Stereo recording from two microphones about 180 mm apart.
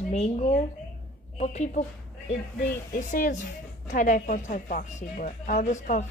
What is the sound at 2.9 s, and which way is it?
A woman's voice, 45° left (ahead or behind).